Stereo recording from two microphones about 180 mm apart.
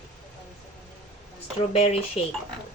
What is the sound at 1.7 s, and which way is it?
Speech, 35° left (ahead or behind).